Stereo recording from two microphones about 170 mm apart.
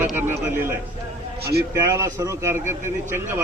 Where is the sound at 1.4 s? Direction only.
70° right (ahead or behind).